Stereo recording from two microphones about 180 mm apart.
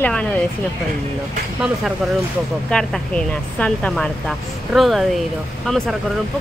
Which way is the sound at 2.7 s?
5° left (ahead or behind).